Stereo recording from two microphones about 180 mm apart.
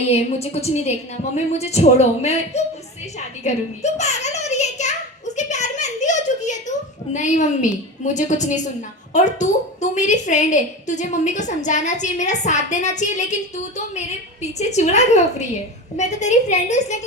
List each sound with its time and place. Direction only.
0.1 s a woman's voice: 35° left (ahead or behind)
3.2 s a sound: 40° left (ahead or behind)
9.1 s a woman's voice: 40° left (ahead or behind)
14.4 s a woman's voice: 40° left (ahead or behind)